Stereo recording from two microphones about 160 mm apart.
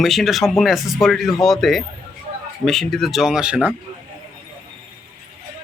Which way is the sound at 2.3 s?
40° right (ahead or behind).